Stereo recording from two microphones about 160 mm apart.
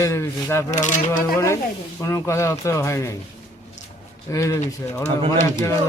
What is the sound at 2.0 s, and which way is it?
Speech, 20° left (ahead or behind).